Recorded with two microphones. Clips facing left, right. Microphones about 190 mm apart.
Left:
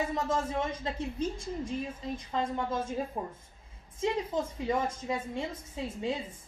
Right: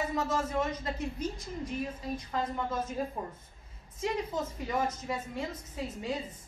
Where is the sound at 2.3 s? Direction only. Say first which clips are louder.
Left 2 dB; 25° left (ahead or behind).